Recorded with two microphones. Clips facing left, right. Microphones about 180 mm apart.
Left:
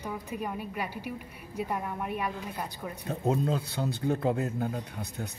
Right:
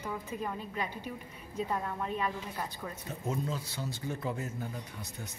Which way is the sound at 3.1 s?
60° left (ahead or behind).